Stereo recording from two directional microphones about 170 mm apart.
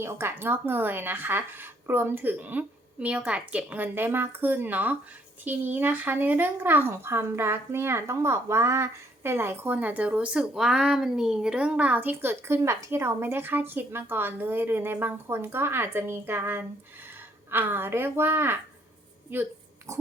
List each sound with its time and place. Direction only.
0.0 s speech: 15° right (ahead or behind)
19.9 s pig: 20° right (ahead or behind)